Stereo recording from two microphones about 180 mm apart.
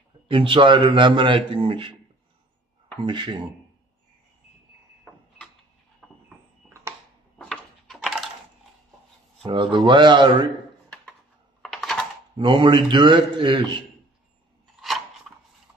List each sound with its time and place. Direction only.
0.3 s a man's voice: 30° right (ahead or behind)
3.1 s a man's voice: 25° right (ahead or behind)
7.3 s a sound: centre (ahead or behind)
9.4 s a man's voice: 25° right (ahead or behind)
11.6 s a sound: centre (ahead or behind)
12.4 s a man's voice: 25° right (ahead or behind)